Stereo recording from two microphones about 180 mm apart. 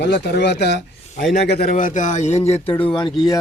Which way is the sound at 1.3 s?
50° left (ahead or behind).